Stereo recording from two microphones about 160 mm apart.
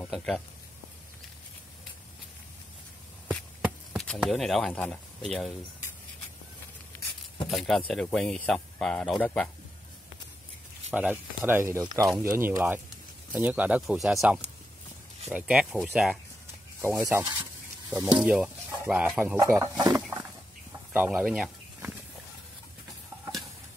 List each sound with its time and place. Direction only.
0.0 s speech: 5° left (ahead or behind)
3.6 s speech: centre (ahead or behind)
6.9 s a sound: 10° left (ahead or behind)
7.5 s speech: centre (ahead or behind)
10.9 s speech: 10° right (ahead or behind)
17.4 s a sound: 10° right (ahead or behind)
18.1 s speech: 5° right (ahead or behind)
19.3 s speech: 20° right (ahead or behind)
19.9 s a sound: 5° right (ahead or behind)
20.9 s speech: 10° right (ahead or behind)